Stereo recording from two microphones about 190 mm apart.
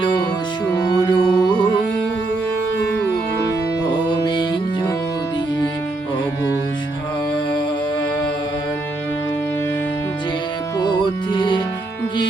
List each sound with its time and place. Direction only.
0.7 s music: 20° left (ahead or behind)
4.1 s music: 25° left (ahead or behind)
10.8 s music: 20° left (ahead or behind)